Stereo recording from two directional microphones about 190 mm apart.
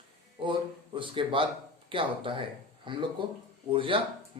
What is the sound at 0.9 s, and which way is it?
A man's voice, 25° right (ahead or behind).